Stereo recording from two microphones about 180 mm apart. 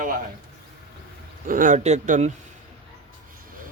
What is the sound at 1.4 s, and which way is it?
Speech, 50° right (ahead or behind).